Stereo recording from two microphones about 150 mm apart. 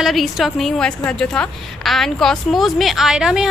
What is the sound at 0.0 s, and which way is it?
A woman's voice, centre (ahead or behind).